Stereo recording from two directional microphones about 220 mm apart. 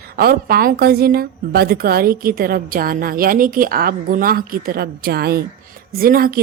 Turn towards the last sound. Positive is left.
turn(degrees=-40)  # may be behind; listen again after turning